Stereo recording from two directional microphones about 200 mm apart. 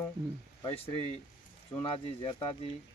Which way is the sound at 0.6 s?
30° left (ahead or behind).